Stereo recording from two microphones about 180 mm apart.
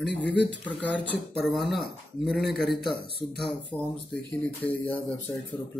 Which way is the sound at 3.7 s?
10° left (ahead or behind).